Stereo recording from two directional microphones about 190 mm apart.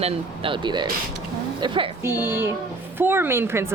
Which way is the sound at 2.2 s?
10° right (ahead or behind).